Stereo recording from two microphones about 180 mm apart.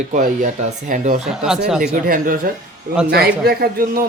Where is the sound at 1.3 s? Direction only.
5° right (ahead or behind).